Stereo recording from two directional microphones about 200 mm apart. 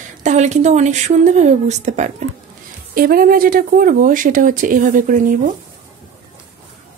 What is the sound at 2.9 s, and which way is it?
A woman's voice, 45° right (ahead or behind).